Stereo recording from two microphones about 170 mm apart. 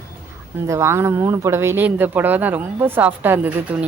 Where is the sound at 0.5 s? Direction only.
15° right (ahead or behind).